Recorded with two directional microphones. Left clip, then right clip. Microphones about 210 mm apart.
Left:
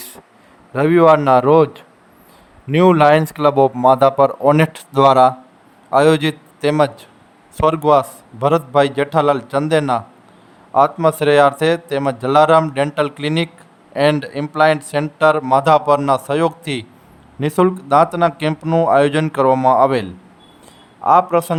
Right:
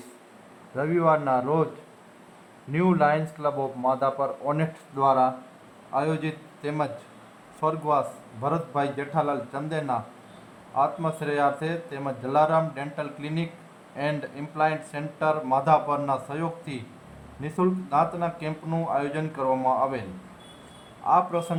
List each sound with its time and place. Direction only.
0.8 s speech: 50° left (ahead or behind)
2.7 s speech: 55° left (ahead or behind)